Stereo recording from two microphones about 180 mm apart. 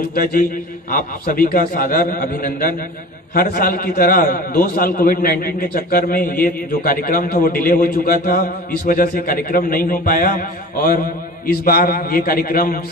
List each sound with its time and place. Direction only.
0.1 s a man's voice: 55° left (ahead or behind)